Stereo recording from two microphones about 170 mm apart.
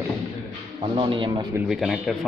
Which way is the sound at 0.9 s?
30° right (ahead or behind).